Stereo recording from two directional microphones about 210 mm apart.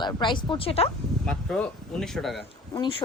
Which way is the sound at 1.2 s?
5° left (ahead or behind).